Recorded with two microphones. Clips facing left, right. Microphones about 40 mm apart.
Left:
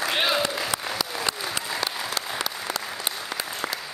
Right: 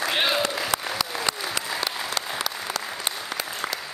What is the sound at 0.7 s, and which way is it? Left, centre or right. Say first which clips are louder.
Applause: right 3 dB; right.